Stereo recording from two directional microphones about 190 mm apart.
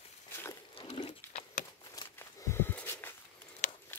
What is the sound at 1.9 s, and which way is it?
Walk, 15° left (ahead or behind).